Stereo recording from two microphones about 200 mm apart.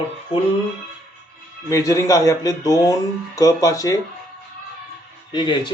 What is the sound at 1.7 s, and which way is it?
A man's voice, 15° left (ahead or behind).